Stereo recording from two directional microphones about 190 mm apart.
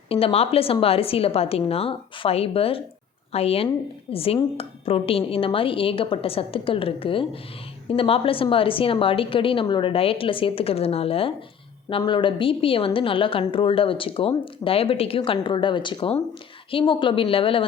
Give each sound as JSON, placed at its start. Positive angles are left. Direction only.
{"t": 0.1, "sound": "a woman's voice", "side_deg": 30}